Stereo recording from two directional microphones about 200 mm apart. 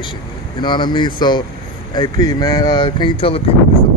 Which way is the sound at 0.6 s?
20° left (ahead or behind).